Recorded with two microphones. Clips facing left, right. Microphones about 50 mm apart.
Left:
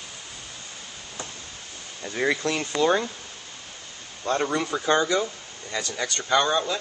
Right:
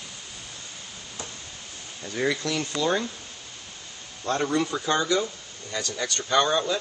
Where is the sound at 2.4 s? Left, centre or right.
Left.